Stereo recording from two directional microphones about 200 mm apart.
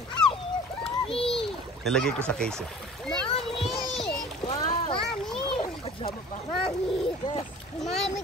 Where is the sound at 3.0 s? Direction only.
5° left (ahead or behind).